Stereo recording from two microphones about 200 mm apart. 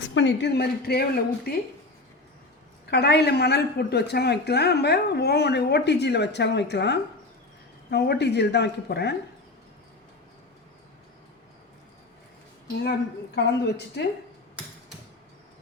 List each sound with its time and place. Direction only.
0.0 s a woman's voice: 65° left (ahead or behind)
2.8 s a woman's voice: 55° left (ahead or behind)
12.8 s a woman's voice: 60° left (ahead or behind)